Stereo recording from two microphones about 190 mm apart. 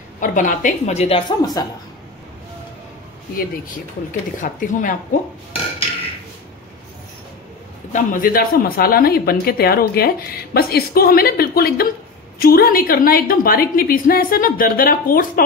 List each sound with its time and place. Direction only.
0.2 s a woman's voice: 45° left (ahead or behind)
1.4 s a woman's voice: 20° left (ahead or behind)
3.3 s a woman's voice: 45° left (ahead or behind)
7.9 s a woman's voice: 45° left (ahead or behind)